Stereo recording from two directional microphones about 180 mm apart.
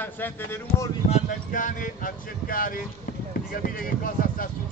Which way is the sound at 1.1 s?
45° left (ahead or behind).